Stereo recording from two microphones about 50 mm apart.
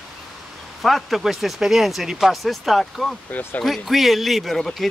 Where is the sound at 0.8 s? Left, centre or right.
Centre.